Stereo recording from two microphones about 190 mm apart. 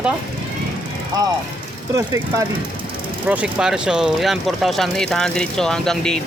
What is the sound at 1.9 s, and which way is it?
Speech, 15° right (ahead or behind).